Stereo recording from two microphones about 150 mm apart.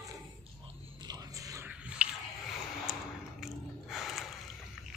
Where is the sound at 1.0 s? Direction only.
25° right (ahead or behind).